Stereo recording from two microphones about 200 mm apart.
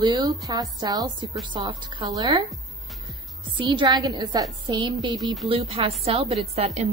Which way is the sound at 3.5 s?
25° right (ahead or behind).